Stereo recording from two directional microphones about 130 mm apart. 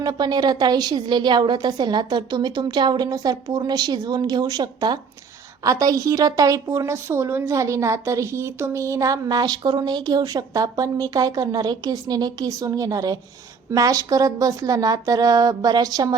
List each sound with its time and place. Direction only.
0.0 s a woman's voice: 30° right (ahead or behind)